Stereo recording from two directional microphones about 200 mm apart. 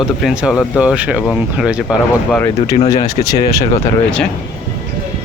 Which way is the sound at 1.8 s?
10° left (ahead or behind).